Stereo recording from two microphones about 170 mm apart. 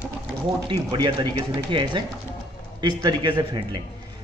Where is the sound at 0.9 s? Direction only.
25° right (ahead or behind).